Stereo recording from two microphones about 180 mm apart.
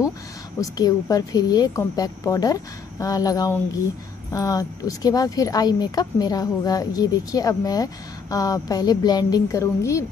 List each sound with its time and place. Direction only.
0.6 s speech: 20° left (ahead or behind)